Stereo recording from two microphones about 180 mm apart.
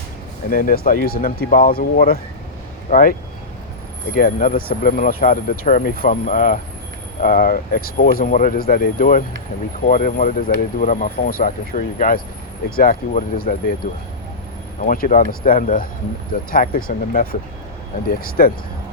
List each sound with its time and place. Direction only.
0.5 s speech: 50° left (ahead or behind)